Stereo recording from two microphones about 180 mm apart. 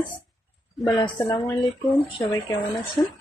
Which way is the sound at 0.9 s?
25° left (ahead or behind).